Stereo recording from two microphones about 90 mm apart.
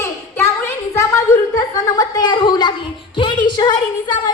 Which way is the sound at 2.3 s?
50° left (ahead or behind).